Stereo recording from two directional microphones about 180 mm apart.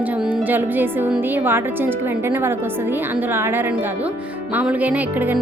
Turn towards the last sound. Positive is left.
turn(degrees=-10)  # may be behind; listen again after turning